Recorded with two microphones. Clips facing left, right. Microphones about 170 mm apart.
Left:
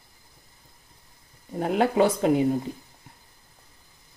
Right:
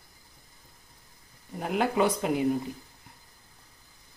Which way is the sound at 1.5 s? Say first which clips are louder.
Left 5 dB; 30° left (ahead or behind).